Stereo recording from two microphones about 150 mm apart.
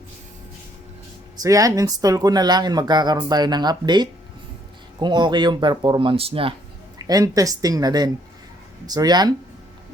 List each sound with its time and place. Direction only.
1.4 s speech: 25° right (ahead or behind)
7.0 s speech: 25° right (ahead or behind)